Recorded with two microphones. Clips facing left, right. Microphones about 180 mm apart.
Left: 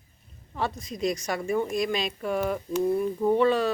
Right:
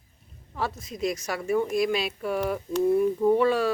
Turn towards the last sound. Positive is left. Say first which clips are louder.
# right 1 dB
turn(degrees=-10)  # may be behind; listen again after turning